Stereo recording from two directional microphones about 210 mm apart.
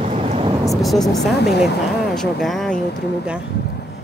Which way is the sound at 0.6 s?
Centre (ahead or behind).